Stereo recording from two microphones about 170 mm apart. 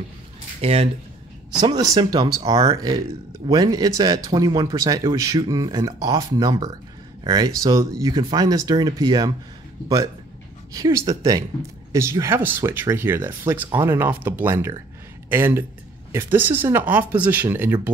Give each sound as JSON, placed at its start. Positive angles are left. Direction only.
{"t": 0.6, "sound": "speech", "side_deg": -35}
{"t": 1.6, "sound": "speech", "side_deg": -25}
{"t": 10.7, "sound": "speech", "side_deg": -20}